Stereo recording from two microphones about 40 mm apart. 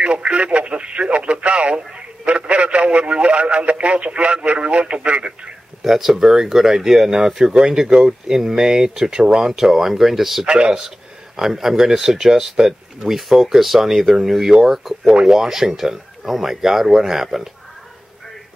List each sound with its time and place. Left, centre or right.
0.0 s speech: right
5.8 s speech: centre
10.4 s speech: right
11.3 s speech: centre